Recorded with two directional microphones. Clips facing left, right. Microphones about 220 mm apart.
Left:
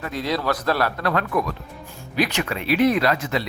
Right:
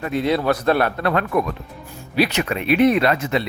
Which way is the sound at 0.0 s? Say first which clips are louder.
Right 5 dB; 25° right (ahead or behind).